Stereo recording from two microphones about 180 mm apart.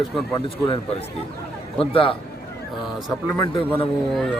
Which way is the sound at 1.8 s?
30° left (ahead or behind).